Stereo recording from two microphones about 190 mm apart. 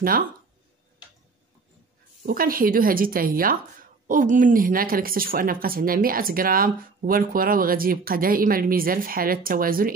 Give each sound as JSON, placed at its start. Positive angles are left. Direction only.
{"t": 2.2, "sound": "speech", "side_deg": -50}